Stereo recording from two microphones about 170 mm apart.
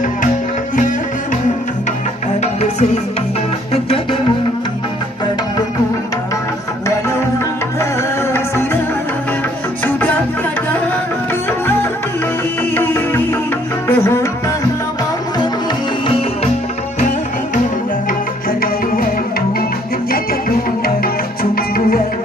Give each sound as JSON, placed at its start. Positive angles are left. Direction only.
{"t": 3.7, "sound": "music", "side_deg": 35}
{"t": 8.3, "sound": "music", "side_deg": 15}
{"t": 12.7, "sound": "music", "side_deg": 10}